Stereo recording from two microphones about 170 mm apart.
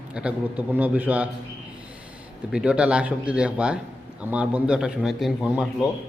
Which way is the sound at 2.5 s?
5° right (ahead or behind).